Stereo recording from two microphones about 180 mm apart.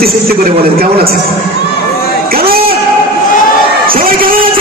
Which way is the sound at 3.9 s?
55° right (ahead or behind).